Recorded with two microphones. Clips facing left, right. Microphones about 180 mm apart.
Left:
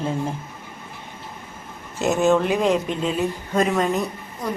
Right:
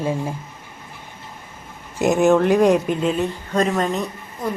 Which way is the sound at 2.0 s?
15° right (ahead or behind).